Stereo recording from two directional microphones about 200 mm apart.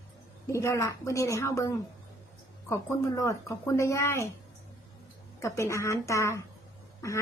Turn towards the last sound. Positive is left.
turn(degrees=15)  # may be behind; listen again after turning